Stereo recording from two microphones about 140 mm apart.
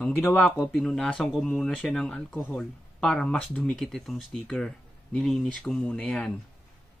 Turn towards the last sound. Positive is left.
turn(degrees=5)  # may be behind; listen again after turning